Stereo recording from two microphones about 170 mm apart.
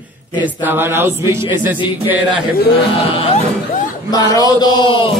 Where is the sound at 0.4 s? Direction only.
10° right (ahead or behind).